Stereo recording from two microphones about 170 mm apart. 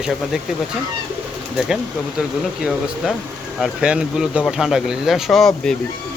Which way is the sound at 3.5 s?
5° right (ahead or behind).